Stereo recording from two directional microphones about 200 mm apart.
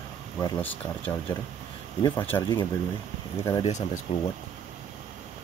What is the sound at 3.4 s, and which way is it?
Speech, 30° left (ahead or behind).